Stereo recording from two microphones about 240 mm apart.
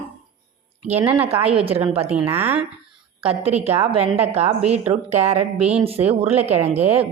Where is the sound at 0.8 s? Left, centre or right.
Right.